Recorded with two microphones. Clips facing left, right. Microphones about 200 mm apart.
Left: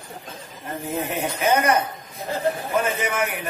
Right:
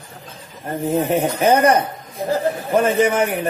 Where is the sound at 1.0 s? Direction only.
35° right (ahead or behind).